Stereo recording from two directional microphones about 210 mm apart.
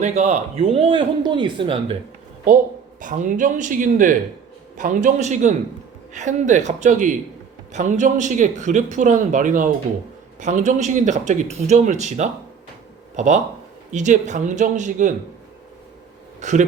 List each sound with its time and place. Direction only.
0.0 s speech: 35° right (ahead or behind)
3.0 s a man's voice: 40° right (ahead or behind)
16.4 s a man's voice: 35° right (ahead or behind)